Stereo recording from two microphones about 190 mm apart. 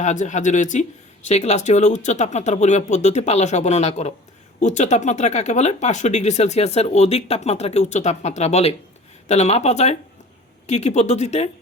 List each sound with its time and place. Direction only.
0.0 s speech: 40° left (ahead or behind)